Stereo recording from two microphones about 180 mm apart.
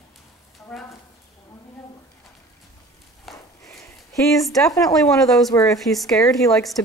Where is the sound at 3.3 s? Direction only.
Centre (ahead or behind).